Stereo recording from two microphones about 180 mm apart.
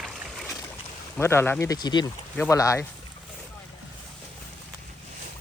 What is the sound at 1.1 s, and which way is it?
Speech, 15° left (ahead or behind).